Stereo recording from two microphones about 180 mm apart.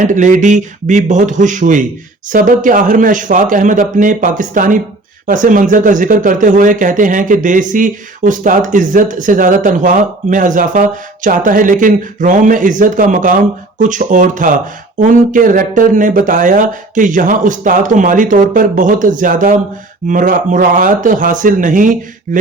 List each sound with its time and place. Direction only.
0.1 s speech: 45° right (ahead or behind)